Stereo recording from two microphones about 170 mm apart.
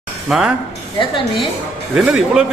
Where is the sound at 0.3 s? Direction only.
Centre (ahead or behind).